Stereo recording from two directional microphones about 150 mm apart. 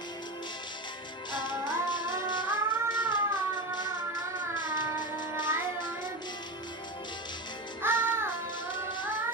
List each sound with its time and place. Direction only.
1.3 s music: 30° left (ahead or behind)
7.8 s music: 15° right (ahead or behind)